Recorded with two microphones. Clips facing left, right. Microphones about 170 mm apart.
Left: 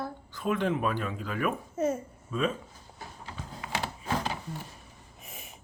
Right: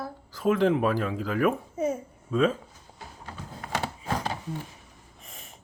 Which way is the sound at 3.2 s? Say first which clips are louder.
Right 2 dB; 45° right (ahead or behind).